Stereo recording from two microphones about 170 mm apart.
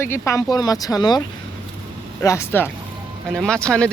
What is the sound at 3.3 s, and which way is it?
Speech, 5° left (ahead or behind).